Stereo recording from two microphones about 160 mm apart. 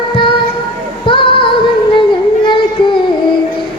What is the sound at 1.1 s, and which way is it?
Music, 30° left (ahead or behind).